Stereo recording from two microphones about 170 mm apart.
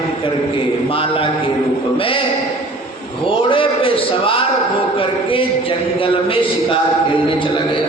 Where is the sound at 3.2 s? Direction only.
30° left (ahead or behind).